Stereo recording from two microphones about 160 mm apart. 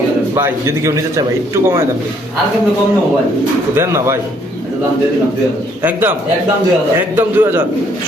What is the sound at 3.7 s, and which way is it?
Speech, 15° right (ahead or behind).